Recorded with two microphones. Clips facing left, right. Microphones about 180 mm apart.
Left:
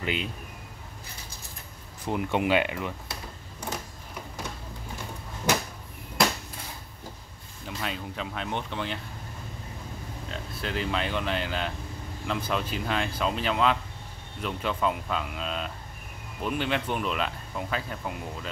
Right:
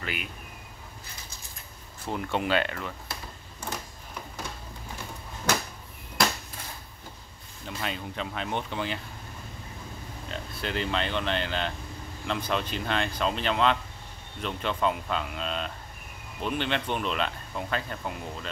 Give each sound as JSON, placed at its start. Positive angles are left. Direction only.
{"t": 0.0, "sound": "speech", "side_deg": 25}
{"t": 2.0, "sound": "speech", "side_deg": 15}
{"t": 7.6, "sound": "speech", "side_deg": 0}
{"t": 10.3, "sound": "speech", "side_deg": 0}